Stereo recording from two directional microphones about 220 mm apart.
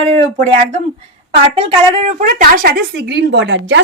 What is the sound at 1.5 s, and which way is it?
Speech, 25° right (ahead or behind).